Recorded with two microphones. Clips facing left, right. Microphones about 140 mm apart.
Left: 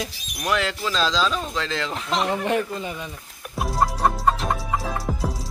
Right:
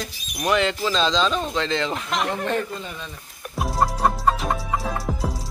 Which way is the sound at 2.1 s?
15° left (ahead or behind).